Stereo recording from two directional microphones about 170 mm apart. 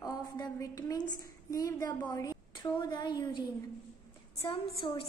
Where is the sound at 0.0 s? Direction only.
20° left (ahead or behind).